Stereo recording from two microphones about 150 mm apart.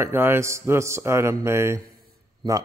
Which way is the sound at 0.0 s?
15° right (ahead or behind).